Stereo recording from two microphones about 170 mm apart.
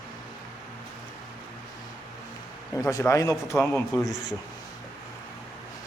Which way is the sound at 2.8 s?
20° left (ahead or behind).